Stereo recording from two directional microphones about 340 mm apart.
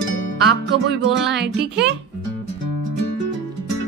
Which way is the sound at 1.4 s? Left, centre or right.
Right.